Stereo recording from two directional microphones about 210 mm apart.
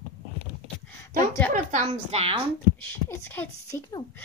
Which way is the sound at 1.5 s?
30° right (ahead or behind).